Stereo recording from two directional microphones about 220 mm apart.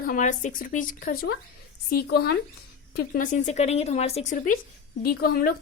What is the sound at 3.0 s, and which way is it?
A woman's voice, 35° left (ahead or behind).